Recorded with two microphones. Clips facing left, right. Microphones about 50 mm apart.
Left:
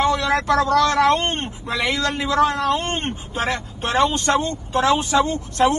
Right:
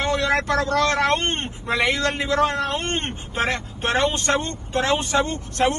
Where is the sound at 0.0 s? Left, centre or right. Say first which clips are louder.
Left 2 dB; right.